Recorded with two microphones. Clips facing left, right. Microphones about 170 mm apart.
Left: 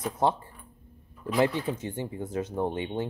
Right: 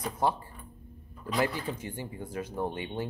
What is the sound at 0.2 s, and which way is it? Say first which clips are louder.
Speech: left 3 dB; 20° left (ahead or behind).